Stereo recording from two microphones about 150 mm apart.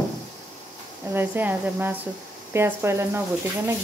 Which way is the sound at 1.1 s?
15° right (ahead or behind).